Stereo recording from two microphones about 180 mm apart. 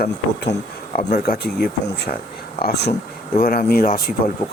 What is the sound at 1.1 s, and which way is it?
Speech, 60° left (ahead or behind).